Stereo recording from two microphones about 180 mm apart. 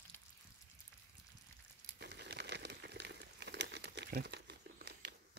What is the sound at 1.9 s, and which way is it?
Crumpling, 65° right (ahead or behind).